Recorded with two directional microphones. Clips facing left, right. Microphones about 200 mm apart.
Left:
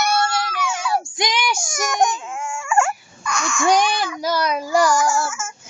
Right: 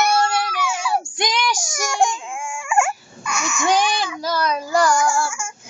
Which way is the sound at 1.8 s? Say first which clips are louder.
Even; 25° right (ahead or behind).